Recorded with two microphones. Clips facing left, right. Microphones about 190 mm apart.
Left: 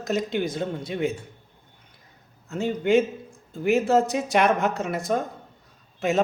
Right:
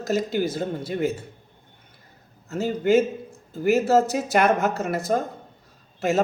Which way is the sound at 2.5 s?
5° right (ahead or behind).